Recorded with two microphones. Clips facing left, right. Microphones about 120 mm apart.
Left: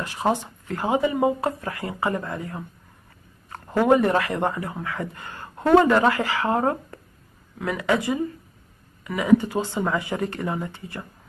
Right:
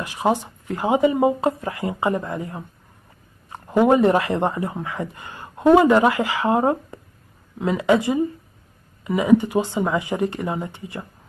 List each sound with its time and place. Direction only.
0.0 s speech: 15° right (ahead or behind)